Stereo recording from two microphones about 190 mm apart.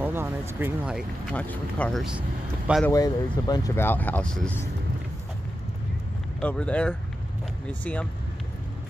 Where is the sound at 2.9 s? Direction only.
20° left (ahead or behind).